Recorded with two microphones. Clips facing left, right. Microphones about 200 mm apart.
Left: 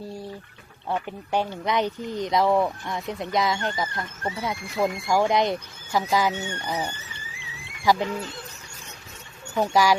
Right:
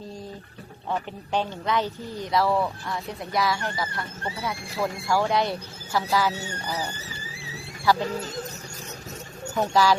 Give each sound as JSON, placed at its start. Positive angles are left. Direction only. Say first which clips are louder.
{"t": 0.9, "sound": "speech", "louder": "left 1 dB", "side_deg": 10}
{"t": 6.3, "sound": "speech", "louder": "left 3 dB", "side_deg": -35}
{"t": 6.9, "sound": "a sound", "louder": "right 4 dB", "side_deg": -35}
{"t": 8.0, "sound": "speech", "louder": "right 1 dB", "side_deg": -40}
{"t": 9.6, "sound": "speech", "louder": "left 1 dB", "side_deg": 15}